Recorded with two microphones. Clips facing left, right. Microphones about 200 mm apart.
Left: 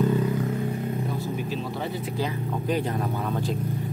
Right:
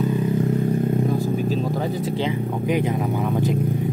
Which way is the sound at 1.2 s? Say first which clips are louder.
Right 7 dB; 40° right (ahead or behind).